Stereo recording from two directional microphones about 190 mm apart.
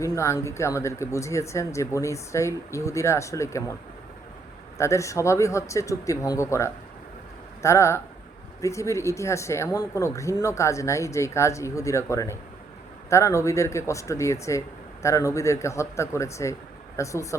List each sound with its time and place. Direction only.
0.0 s speech: 15° left (ahead or behind)
4.8 s speech: 15° left (ahead or behind)